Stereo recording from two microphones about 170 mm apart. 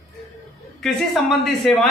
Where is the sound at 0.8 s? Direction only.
Centre (ahead or behind).